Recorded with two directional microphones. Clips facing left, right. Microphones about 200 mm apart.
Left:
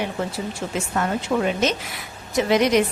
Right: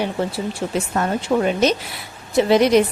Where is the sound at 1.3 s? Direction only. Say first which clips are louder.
Right 5 dB; 30° right (ahead or behind).